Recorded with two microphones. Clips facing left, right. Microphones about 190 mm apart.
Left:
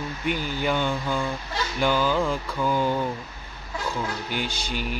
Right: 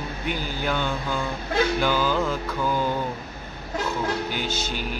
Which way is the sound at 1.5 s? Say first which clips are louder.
Right 8 dB; 60° right (ahead or behind).